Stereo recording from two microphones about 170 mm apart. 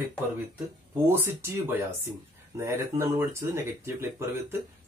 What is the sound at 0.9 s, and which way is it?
Speech, 15° right (ahead or behind).